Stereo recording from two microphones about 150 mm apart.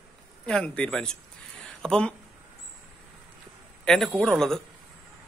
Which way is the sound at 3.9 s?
Centre (ahead or behind).